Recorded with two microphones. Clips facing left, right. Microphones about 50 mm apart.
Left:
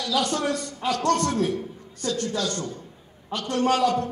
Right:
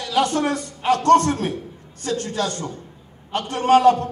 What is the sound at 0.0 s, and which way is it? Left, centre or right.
A man's voice, right.